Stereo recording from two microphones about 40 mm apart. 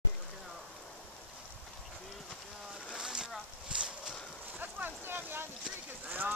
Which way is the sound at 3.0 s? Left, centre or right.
Centre.